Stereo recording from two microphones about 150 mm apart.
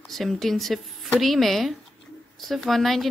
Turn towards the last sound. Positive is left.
turn(degrees=0)  # may be behind; listen again after turning